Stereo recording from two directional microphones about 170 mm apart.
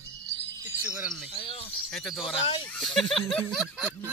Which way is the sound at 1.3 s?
30° left (ahead or behind).